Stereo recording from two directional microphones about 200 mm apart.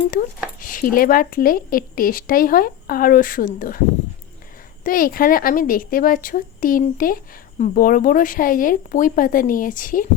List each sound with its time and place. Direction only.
0.6 s a woman's voice: 45° left (ahead or behind)
4.8 s a woman's voice: 45° left (ahead or behind)